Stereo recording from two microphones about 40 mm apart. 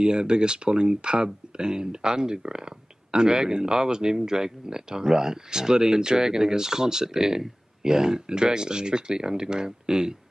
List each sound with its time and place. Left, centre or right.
0.0 s speech: centre